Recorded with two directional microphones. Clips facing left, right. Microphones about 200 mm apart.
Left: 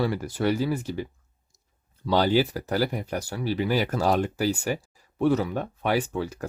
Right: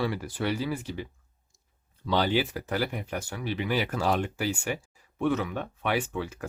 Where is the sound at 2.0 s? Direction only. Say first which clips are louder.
Left 4 dB; 40° left (ahead or behind).